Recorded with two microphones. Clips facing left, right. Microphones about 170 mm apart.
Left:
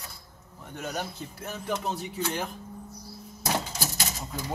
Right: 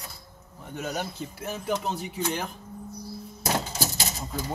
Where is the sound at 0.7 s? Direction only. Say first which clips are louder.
Right 2 dB; 5° right (ahead or behind).